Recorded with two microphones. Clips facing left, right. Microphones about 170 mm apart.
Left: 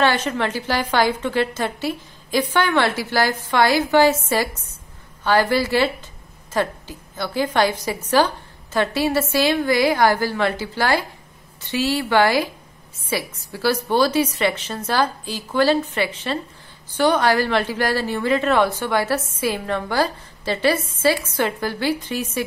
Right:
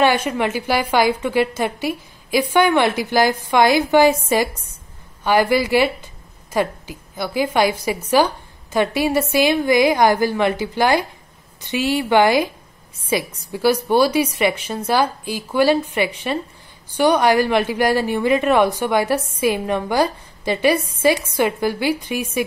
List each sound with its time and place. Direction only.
0.0 s a woman's voice: 10° right (ahead or behind)